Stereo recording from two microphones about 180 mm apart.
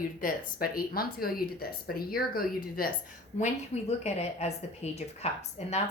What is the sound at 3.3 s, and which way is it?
A woman's voice, 40° left (ahead or behind).